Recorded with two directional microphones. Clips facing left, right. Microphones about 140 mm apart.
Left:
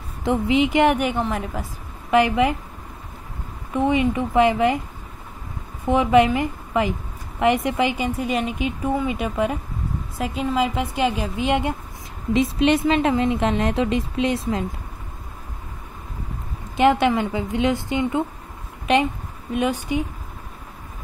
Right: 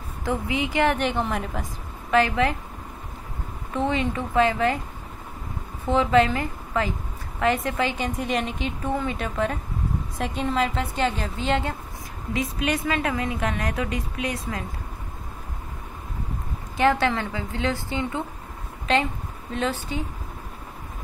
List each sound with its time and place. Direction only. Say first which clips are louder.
0.2 s a woman's voice: left 7 dB; 20° left (ahead or behind); by 1.7 s 5° left (ahead or behind)
2.0 s a woman's voice: left 3 dB; 15° left (ahead or behind)
3.7 s a woman's voice: left 5 dB; 15° left (ahead or behind)
5.9 s a woman's voice: left 3 dB; 15° left (ahead or behind)
12.4 s a woman's voice: left 8 dB; 25° left (ahead or behind)
16.7 s a woman's voice: left 4 dB; 20° left (ahead or behind)